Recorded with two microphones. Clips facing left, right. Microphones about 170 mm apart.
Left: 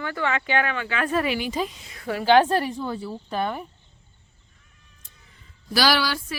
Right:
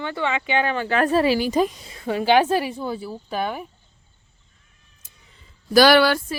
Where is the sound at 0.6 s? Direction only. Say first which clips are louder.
Right 6 dB; 35° right (ahead or behind).